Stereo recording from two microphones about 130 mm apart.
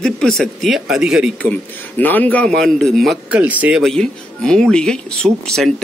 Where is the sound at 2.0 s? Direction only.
15° left (ahead or behind).